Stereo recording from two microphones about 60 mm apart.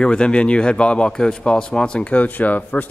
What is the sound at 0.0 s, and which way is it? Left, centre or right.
Speech, centre.